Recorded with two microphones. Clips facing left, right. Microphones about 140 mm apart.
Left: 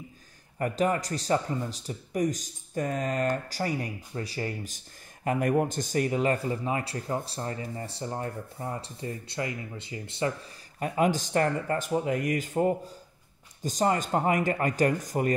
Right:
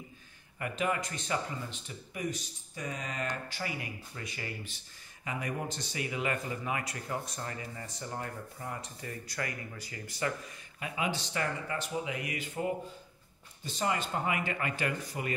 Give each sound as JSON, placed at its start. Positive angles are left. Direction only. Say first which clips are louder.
{"t": 0.6, "sound": "speech", "louder": "left 6 dB", "side_deg": 40}
{"t": 10.8, "sound": "speech", "louder": "left 9 dB", "side_deg": 45}